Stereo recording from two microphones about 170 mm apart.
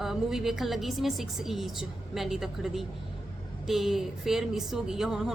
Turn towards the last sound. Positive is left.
turn(degrees=0)  # may be behind; listen again after turning